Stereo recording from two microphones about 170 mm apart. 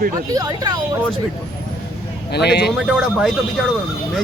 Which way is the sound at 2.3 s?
75° left (ahead or behind).